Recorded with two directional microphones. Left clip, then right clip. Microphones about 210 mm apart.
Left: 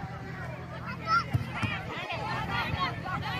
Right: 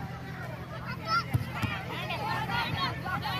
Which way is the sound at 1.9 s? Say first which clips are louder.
Right 1 dB; 5° left (ahead or behind).